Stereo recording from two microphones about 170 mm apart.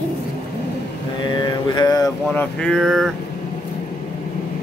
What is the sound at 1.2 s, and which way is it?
Mantra, 25° left (ahead or behind).